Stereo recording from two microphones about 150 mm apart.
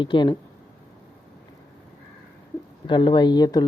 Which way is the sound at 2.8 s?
30° left (ahead or behind).